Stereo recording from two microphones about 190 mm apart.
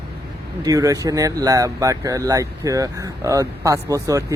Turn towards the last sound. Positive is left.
turn(degrees=-15)  # may be behind; listen again after turning